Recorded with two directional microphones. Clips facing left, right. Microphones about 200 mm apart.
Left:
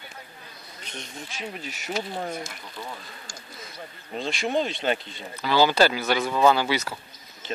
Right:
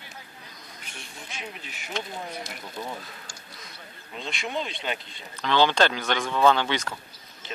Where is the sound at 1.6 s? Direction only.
40° left (ahead or behind).